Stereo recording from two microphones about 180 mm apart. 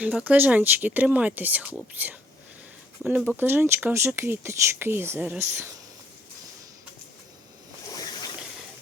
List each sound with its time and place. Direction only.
0.0 s speech: 5° right (ahead or behind)
7.9 s boat: 20° left (ahead or behind)